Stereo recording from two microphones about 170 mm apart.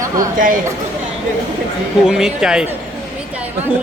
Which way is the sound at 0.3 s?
50° right (ahead or behind).